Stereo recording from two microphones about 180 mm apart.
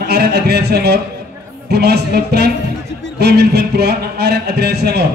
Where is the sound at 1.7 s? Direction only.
65° right (ahead or behind).